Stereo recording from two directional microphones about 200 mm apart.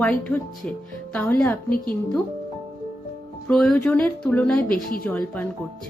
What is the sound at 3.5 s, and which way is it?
A woman's voice, 5° left (ahead or behind).